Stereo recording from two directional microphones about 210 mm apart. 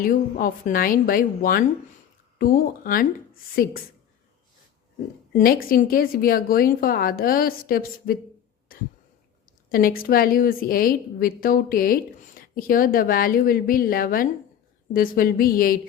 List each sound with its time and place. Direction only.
0.0 s a woman's voice: 40° left (ahead or behind)
5.4 s a woman's voice: 45° left (ahead or behind)
9.6 s a woman's voice: 45° left (ahead or behind)